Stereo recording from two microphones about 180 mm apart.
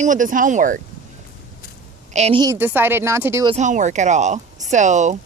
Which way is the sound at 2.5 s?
10° right (ahead or behind).